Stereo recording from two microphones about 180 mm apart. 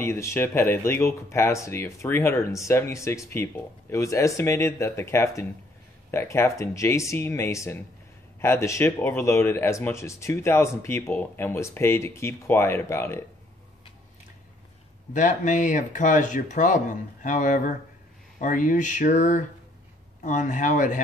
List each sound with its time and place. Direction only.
0.0 s speech: 15° left (ahead or behind)
15.1 s speech: 45° left (ahead or behind)